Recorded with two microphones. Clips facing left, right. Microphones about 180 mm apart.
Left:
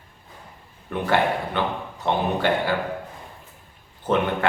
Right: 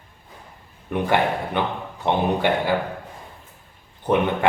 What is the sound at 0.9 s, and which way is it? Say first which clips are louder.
Speech: right 1 dB; 15° right (ahead or behind).